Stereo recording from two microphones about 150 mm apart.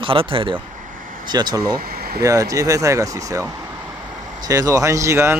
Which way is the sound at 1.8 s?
90° right.